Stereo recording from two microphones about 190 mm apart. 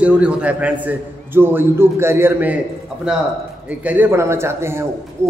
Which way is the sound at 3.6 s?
10° right (ahead or behind).